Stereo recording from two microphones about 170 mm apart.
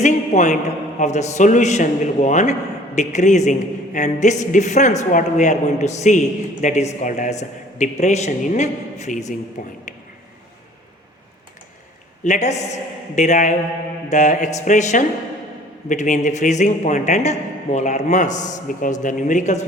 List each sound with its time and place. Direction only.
0.0 s a man's voice: 45° left (ahead or behind)
12.2 s a woman's voice: 45° left (ahead or behind)